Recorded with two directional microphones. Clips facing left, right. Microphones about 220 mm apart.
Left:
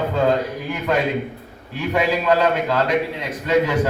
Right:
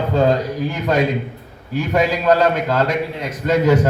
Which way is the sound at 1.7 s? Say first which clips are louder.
Right 2 dB; 40° right (ahead or behind).